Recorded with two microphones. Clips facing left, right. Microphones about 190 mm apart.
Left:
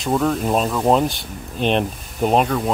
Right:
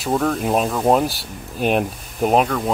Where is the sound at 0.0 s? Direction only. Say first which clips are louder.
Left 1 dB; 5° right (ahead or behind).